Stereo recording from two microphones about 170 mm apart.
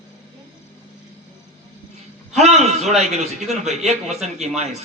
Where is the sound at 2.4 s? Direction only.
40° right (ahead or behind).